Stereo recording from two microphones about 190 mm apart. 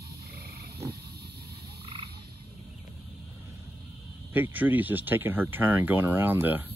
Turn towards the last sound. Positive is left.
turn(degrees=-10)  # may be behind; listen again after turning